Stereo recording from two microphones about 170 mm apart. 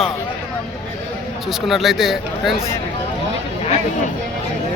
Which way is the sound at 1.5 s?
Centre (ahead or behind).